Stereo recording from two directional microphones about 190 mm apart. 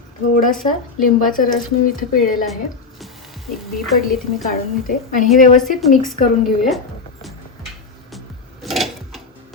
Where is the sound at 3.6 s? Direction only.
Centre (ahead or behind).